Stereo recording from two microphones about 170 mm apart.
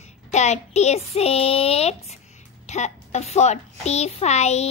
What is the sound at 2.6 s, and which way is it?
A child's voice, 40° left (ahead or behind).